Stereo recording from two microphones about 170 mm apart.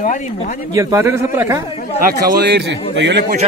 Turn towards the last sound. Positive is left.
turn(degrees=-85)